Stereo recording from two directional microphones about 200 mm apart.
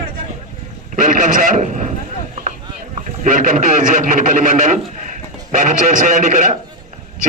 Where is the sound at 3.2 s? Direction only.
40° right (ahead or behind).